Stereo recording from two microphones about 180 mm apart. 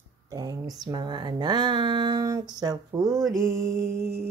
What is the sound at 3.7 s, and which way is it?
Music, 15° right (ahead or behind).